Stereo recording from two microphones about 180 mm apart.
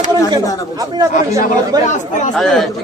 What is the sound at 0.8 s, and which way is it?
Speech, 20° right (ahead or behind).